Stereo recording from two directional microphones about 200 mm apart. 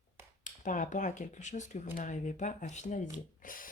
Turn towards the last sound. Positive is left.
turn(degrees=45)  # may be behind; listen again after turning